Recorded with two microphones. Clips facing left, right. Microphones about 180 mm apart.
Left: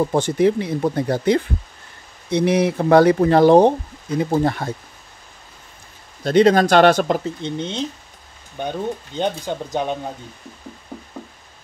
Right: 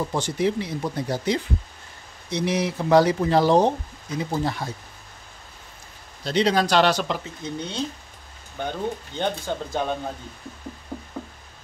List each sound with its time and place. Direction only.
0.1 s speech: 55° left (ahead or behind)
6.2 s speech: 50° left (ahead or behind)
7.4 s speech: 25° left (ahead or behind)